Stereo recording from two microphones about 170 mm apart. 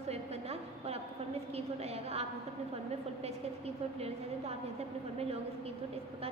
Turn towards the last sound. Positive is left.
turn(degrees=-35)  # may be behind; listen again after turning